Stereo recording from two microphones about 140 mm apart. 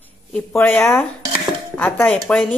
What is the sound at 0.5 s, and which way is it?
A woman's voice, 15° left (ahead or behind).